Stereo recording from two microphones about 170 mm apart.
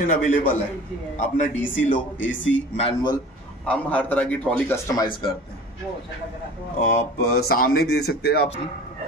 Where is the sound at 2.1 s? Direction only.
90° left.